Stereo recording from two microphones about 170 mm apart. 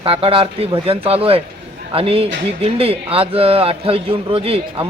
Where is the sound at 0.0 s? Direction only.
35° right (ahead or behind).